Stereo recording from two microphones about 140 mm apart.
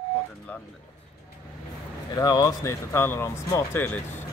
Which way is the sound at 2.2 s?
30° left (ahead or behind).